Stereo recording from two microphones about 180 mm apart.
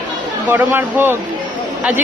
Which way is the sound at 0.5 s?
10° right (ahead or behind).